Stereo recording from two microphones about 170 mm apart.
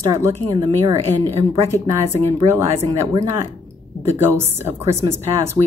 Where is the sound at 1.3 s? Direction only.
35° right (ahead or behind).